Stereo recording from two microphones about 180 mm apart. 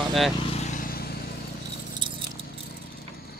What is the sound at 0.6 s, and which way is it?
Vehicle, 45° left (ahead or behind).